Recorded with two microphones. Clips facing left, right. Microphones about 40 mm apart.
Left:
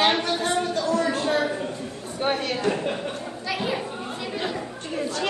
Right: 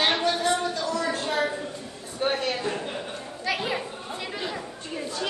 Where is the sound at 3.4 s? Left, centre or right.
Centre.